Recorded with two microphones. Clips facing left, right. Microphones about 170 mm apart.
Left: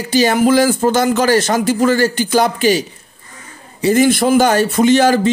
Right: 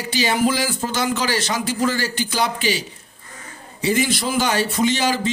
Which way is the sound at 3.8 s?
50° left (ahead or behind).